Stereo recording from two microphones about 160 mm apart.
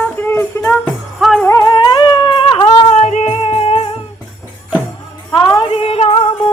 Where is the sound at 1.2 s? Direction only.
Centre (ahead or behind).